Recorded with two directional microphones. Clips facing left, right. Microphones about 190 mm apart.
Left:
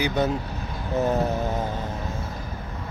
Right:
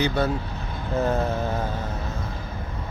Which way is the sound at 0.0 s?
20° left (ahead or behind).